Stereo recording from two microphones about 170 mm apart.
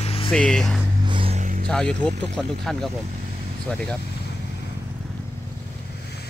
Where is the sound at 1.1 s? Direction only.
30° right (ahead or behind).